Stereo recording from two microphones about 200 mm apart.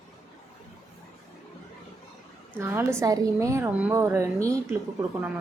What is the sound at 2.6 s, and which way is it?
A woman's voice, 10° right (ahead or behind).